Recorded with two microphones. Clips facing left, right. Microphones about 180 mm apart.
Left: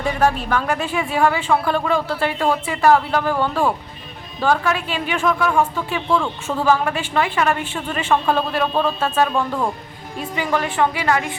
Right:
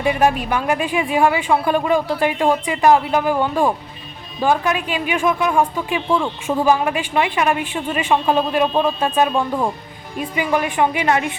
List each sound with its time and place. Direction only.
0.0 s speech: 15° right (ahead or behind)